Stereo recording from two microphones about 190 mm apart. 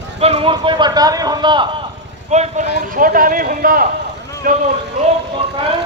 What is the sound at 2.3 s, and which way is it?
Speech, 35° right (ahead or behind).